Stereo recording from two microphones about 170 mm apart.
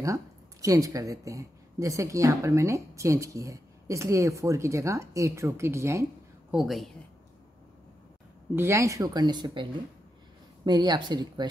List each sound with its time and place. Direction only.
0.0 s a woman's voice: 20° right (ahead or behind)
6.5 s a woman's voice: centre (ahead or behind)
8.5 s speech: 15° right (ahead or behind)